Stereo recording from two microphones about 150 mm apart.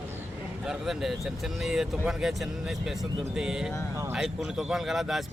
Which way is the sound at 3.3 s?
5° right (ahead or behind).